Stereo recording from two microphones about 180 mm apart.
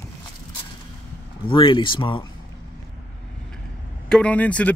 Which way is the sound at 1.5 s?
25° left (ahead or behind).